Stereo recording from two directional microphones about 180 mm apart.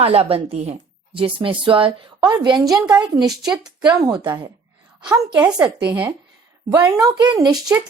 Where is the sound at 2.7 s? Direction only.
5° right (ahead or behind).